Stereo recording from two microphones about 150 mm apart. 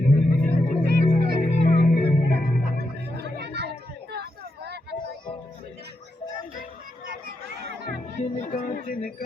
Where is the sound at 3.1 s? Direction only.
90° right.